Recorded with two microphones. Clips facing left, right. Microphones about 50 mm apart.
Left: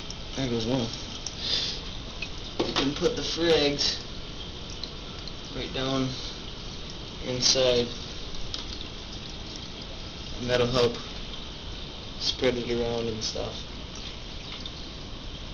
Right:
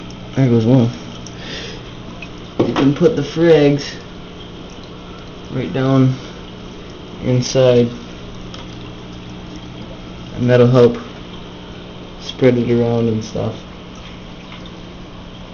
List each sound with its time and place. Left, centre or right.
0.6 s speech: right
2.5 s speech: right
5.5 s speech: right
7.2 s speech: right
10.3 s speech: right
12.3 s speech: right